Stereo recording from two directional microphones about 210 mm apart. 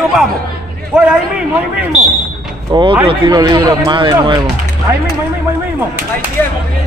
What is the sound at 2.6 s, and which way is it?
Speech, 25° right (ahead or behind).